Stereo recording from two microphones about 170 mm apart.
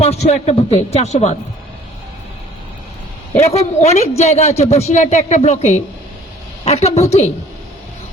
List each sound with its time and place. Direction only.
0.0 s a man's voice: 40° left (ahead or behind)
3.5 s a man's voice: 40° left (ahead or behind)